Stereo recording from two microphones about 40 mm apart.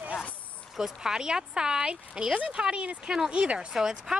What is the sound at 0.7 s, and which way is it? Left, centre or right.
Speech, centre.